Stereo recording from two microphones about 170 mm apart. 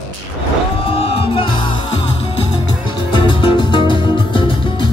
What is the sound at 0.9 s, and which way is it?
Music, 35° left (ahead or behind).